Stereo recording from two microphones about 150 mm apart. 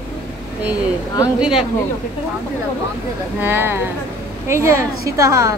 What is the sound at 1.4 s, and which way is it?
Speech, 5° right (ahead or behind).